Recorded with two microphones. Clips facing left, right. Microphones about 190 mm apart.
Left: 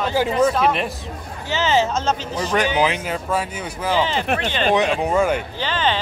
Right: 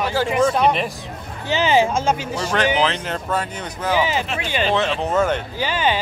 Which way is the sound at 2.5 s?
15° left (ahead or behind).